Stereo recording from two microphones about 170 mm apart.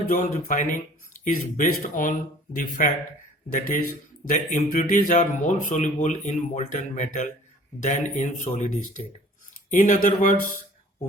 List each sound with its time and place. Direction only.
0.1 s speech: 50° left (ahead or behind)
4.3 s speech: 45° left (ahead or behind)